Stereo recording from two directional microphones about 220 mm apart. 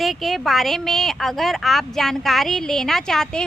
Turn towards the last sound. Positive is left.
turn(degrees=5)  # may be behind; listen again after turning